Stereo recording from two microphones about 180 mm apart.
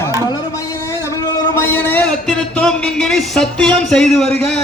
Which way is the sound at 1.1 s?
15° left (ahead or behind).